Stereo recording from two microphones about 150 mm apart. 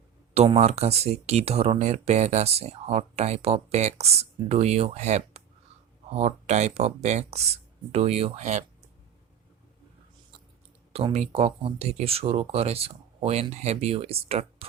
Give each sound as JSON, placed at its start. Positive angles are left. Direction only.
{"t": 0.3, "sound": "speech", "side_deg": -45}
{"t": 10.9, "sound": "speech", "side_deg": -45}